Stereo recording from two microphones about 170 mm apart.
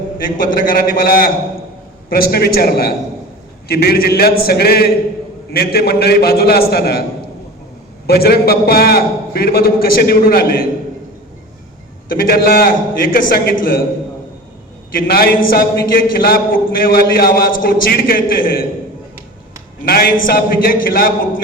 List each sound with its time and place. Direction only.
0.4 s a man's voice: 55° left (ahead or behind)
8.0 s a man's voice: 65° left (ahead or behind)
12.0 s a man's voice: 60° left (ahead or behind)
14.9 s a man's voice: 60° left (ahead or behind)
19.8 s a man's voice: 60° left (ahead or behind)